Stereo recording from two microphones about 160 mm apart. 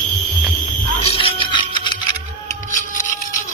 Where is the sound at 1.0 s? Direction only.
35° left (ahead or behind).